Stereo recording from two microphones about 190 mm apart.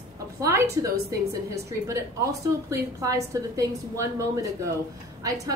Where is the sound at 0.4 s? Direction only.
15° right (ahead or behind).